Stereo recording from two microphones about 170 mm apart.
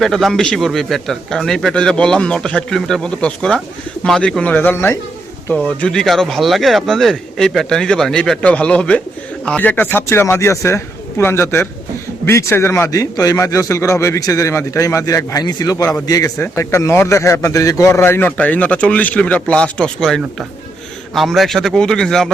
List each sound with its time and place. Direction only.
0.0 s a man's voice: centre (ahead or behind)